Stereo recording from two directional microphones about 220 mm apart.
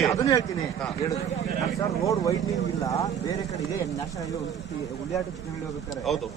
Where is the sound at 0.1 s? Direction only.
15° left (ahead or behind).